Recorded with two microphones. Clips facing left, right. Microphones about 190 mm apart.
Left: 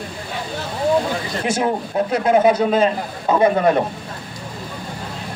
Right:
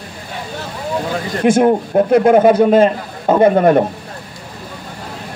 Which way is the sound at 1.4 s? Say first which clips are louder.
Right 10 dB; 55° right (ahead or behind).